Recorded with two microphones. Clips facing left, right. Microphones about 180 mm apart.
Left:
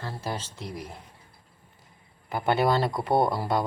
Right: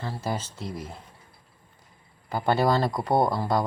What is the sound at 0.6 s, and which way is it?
Speech, 15° left (ahead or behind).